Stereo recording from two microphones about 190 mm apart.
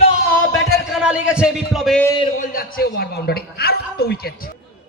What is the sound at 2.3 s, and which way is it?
A man's voice, 45° left (ahead or behind).